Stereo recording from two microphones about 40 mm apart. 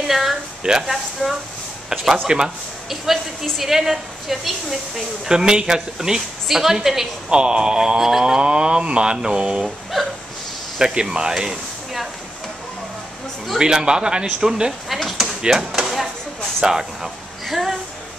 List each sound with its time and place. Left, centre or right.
0.0 s a sound: centre
0.7 s a woman's voice: centre
1.2 s speech: centre
2.2 s a woman's voice: centre
3.5 s a woman's voice: centre
5.3 s a woman's voice: centre
7.2 s mantra: right
10.8 s speech: centre
13.6 s mantra: centre
14.9 s speech: centre
15.5 s chop: centre
16.6 s a woman's voice: centre
17.5 s speech: centre